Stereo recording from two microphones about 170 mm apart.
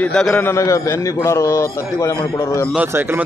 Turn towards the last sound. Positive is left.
turn(degrees=-10)  # may be behind; listen again after turning